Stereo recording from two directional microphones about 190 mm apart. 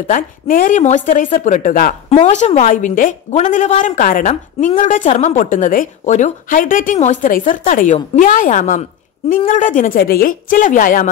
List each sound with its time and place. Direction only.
0.0 s a woman's voice: 45° left (ahead or behind)
2.0 s a man's voice: 35° left (ahead or behind)